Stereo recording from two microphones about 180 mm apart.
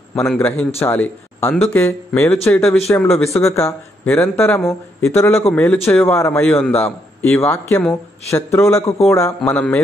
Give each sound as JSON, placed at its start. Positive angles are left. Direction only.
{"t": 0.1, "sound": "a man's voice", "side_deg": 5}
{"t": 3.3, "sound": "a man's voice", "side_deg": 15}